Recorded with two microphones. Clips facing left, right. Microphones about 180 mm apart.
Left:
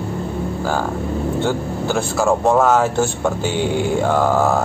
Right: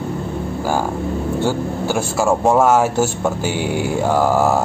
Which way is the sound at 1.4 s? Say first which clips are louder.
Right 1 dB; 10° right (ahead or behind).